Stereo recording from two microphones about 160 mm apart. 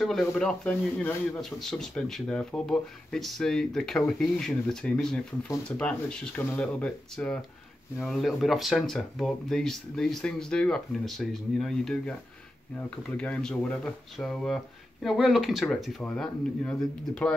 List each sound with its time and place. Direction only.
0.0 s a man's voice: centre (ahead or behind)